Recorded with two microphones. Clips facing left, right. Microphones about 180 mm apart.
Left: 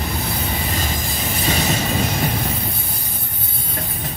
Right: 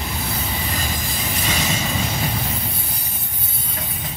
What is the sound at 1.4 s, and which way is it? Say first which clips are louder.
Train: left 4 dB; 35° left (ahead or behind).